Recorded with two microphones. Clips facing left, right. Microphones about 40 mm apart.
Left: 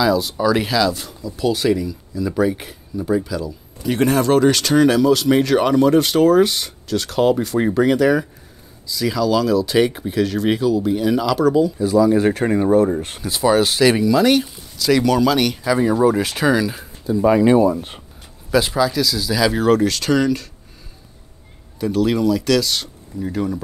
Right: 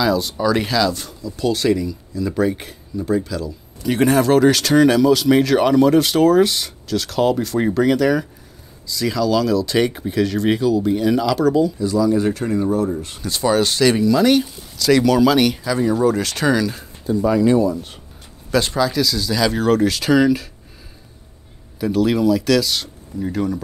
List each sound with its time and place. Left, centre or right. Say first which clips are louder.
0.0 s speech: left 1 dB; centre
11.8 s speech: left 3 dB; left
13.2 s speech: left 1 dB; centre
15.6 s speech: left 2 dB; centre
17.2 s speech: left 3 dB; left
18.5 s speech: left 1 dB; centre
21.7 s speech: right 1 dB; centre